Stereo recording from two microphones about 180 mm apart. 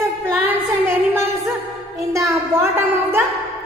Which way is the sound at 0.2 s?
10° right (ahead or behind).